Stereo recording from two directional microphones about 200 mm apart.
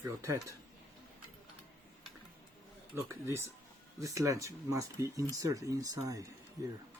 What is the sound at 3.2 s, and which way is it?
Speech, 10° right (ahead or behind).